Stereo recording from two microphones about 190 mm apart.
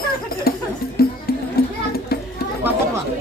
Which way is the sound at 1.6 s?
50° left (ahead or behind).